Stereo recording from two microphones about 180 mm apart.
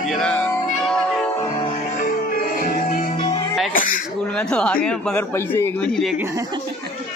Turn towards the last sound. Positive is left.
turn(degrees=10)  # may be behind; listen again after turning